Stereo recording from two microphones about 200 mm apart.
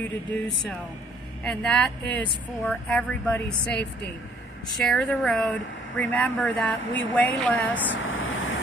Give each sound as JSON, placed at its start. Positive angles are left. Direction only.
{"t": 1.4, "sound": "speech", "side_deg": 5}
{"t": 4.8, "sound": "speech", "side_deg": 5}
{"t": 7.9, "sound": "vehicle", "side_deg": 75}